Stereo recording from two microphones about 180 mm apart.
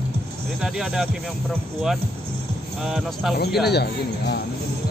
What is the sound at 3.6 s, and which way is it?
Speech, 65° left (ahead or behind).